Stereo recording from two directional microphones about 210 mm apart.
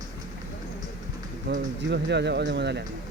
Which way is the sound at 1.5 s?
55° right (ahead or behind).